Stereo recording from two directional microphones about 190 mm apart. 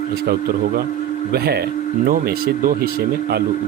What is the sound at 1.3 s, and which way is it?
Speech, 55° right (ahead or behind).